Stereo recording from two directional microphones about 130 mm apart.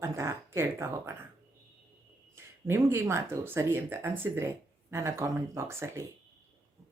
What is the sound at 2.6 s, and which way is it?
Speech, 20° right (ahead or behind).